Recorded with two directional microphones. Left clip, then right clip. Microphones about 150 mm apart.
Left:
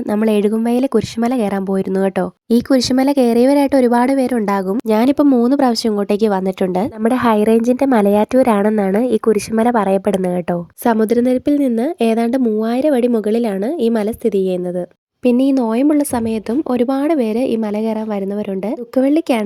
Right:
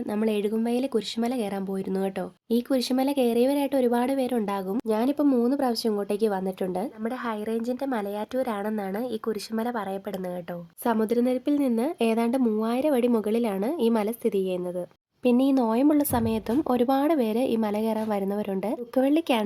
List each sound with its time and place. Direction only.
0.1 s speech: 50° left (ahead or behind)
4.9 s a woman's voice: 60° left (ahead or behind)
10.9 s a woman's voice: 45° left (ahead or behind)
18.9 s a woman's voice: 30° left (ahead or behind)